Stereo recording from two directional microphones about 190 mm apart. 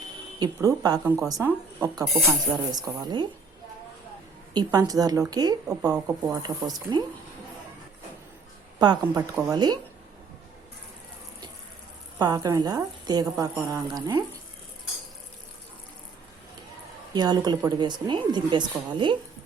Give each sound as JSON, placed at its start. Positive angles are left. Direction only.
{"t": 0.3, "sound": "a woman's voice", "side_deg": -20}
{"t": 4.5, "sound": "a woman's voice", "side_deg": -20}
{"t": 8.8, "sound": "a woman's voice", "side_deg": -20}
{"t": 12.2, "sound": "a woman's voice", "side_deg": -20}
{"t": 13.4, "sound": "speech", "side_deg": -10}
{"t": 17.2, "sound": "a woman's voice", "side_deg": -20}